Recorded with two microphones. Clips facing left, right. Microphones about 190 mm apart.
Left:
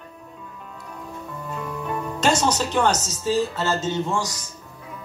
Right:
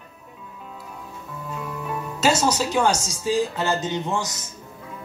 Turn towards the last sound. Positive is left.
turn(degrees=-20)  # may be behind; listen again after turning